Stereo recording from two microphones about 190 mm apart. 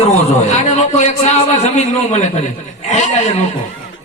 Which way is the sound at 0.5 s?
35° left (ahead or behind).